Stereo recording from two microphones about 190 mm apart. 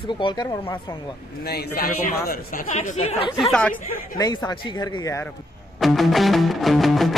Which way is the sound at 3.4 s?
5° left (ahead or behind).